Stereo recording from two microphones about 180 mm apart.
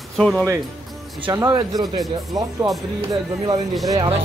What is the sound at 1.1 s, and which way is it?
Speech, 25° right (ahead or behind).